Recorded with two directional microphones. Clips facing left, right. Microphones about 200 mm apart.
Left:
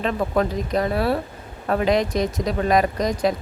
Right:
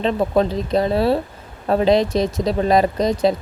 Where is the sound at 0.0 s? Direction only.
25° right (ahead or behind).